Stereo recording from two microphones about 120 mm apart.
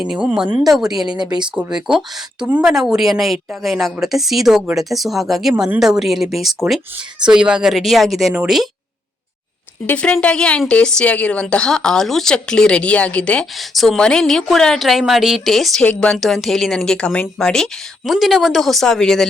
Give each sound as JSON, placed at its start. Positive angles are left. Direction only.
{"t": 0.0, "sound": "speech", "side_deg": -10}
{"t": 1.0, "sound": "speech", "side_deg": -35}
{"t": 1.5, "sound": "speech", "side_deg": -5}
{"t": 9.8, "sound": "speech", "side_deg": 10}